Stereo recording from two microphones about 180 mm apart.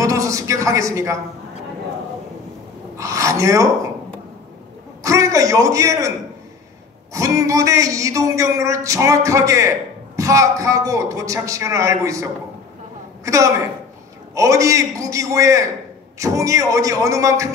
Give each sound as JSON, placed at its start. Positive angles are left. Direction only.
{"t": 0.0, "sound": "speech", "side_deg": -20}
{"t": 3.0, "sound": "a man's voice", "side_deg": -15}
{"t": 5.0, "sound": "a man's voice", "side_deg": -15}